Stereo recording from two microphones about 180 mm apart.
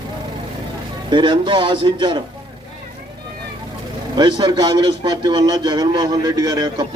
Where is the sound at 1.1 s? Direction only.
25° right (ahead or behind).